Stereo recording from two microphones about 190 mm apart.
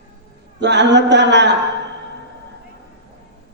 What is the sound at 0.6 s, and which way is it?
Speech, 65° right (ahead or behind).